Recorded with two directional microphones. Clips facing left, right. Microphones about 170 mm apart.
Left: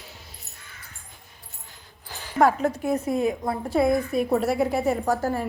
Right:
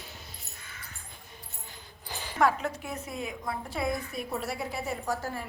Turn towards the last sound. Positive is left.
turn(degrees=50)  # may be behind; listen again after turning